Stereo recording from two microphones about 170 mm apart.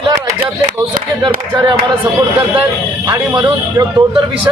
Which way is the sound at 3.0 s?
25° right (ahead or behind).